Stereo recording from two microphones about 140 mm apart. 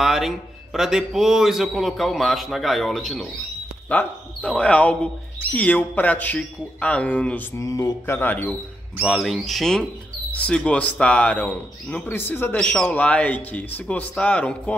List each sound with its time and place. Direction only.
0.0 s a man's voice: centre (ahead or behind)
7.5 s speech: 20° left (ahead or behind)
9.0 s a man's voice: centre (ahead or behind)